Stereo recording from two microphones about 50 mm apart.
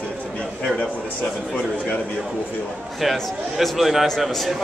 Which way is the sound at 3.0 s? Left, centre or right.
Centre.